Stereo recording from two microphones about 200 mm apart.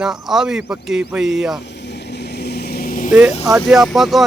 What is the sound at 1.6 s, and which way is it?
Vehicle, 60° left (ahead or behind).